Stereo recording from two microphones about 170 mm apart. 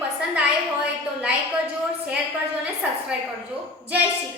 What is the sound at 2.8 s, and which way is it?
Speech, 10° right (ahead or behind).